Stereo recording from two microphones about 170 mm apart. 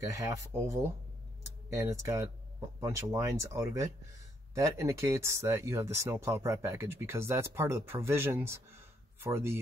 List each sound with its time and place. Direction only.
0.0 s speech: 20° right (ahead or behind)